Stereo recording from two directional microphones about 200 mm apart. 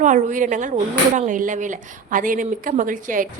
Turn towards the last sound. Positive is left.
turn(degrees=-40)  # may be behind; listen again after turning